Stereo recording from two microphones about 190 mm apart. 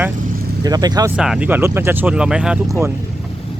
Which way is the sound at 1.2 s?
5° right (ahead or behind).